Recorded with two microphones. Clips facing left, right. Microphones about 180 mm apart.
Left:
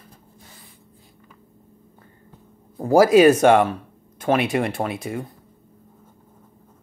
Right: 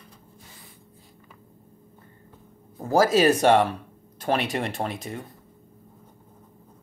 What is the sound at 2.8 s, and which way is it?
Speech, 15° left (ahead or behind).